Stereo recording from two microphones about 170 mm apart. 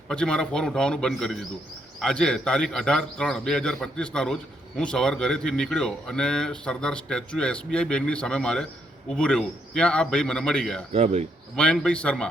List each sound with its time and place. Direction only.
0.1 s speech: 5° left (ahead or behind)
10.9 s speech: 40° right (ahead or behind)
11.5 s speech: 5° left (ahead or behind)